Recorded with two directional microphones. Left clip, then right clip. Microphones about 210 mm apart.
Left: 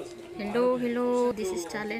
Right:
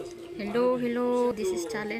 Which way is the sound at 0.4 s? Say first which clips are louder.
Even; centre (ahead or behind).